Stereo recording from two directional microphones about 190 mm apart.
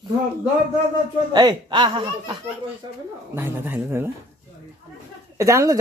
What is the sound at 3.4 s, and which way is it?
Speech, 10° right (ahead or behind).